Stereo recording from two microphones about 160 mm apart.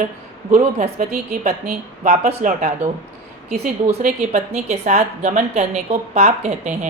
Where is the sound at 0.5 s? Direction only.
55° right (ahead or behind).